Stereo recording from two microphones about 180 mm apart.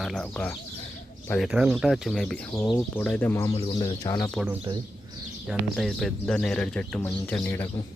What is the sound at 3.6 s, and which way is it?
Speech, 25° left (ahead or behind).